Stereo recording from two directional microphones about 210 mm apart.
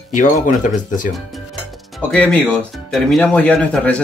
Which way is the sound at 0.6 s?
40° left (ahead or behind).